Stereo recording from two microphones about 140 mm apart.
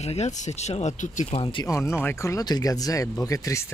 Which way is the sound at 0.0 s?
50° left (ahead or behind).